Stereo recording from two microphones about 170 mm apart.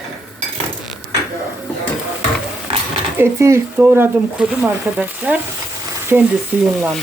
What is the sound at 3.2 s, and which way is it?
Speech, 15° right (ahead or behind).